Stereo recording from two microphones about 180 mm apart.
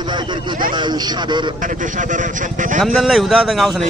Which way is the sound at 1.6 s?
45° right (ahead or behind).